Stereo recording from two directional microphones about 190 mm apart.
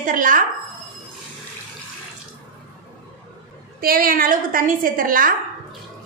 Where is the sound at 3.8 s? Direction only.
50° right (ahead or behind).